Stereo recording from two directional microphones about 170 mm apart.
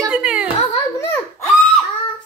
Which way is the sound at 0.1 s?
5° right (ahead or behind).